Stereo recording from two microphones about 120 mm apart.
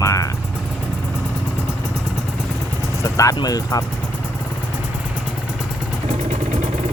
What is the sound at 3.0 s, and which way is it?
Vehicle, 25° left (ahead or behind).